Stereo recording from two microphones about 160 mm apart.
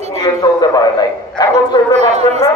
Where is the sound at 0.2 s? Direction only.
25° left (ahead or behind).